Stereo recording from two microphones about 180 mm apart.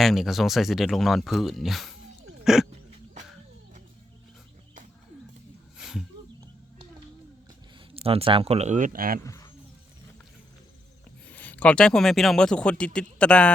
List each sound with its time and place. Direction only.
0.0 s speech: centre (ahead or behind)
2.4 s a sound: 5° right (ahead or behind)
5.7 s a sound: 5° right (ahead or behind)
8.0 s speech: 30° right (ahead or behind); by 9.2 s 50° right (ahead or behind)
9.2 s wild animals: 15° left (ahead or behind)
11.3 s speech: 10° left (ahead or behind)